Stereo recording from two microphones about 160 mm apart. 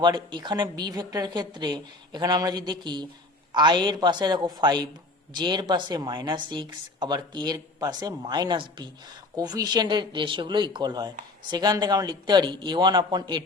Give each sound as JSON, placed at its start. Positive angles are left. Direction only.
{"t": 0.0, "sound": "speech", "side_deg": -30}